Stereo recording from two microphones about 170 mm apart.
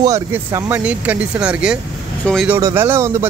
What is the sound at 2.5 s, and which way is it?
Speech, 15° right (ahead or behind).